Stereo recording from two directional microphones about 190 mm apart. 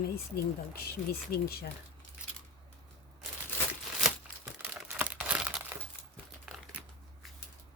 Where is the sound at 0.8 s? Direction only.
55° left (ahead or behind).